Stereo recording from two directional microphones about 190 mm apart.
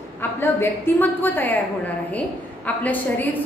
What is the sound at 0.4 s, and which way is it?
A woman's voice, 10° left (ahead or behind).